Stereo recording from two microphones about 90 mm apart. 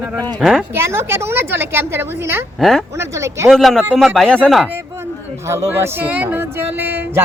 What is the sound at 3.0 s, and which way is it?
Speech, 30° right (ahead or behind).